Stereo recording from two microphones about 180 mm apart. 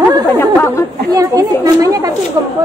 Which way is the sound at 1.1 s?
20° right (ahead or behind).